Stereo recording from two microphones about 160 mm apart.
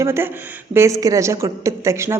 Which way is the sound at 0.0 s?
15° right (ahead or behind).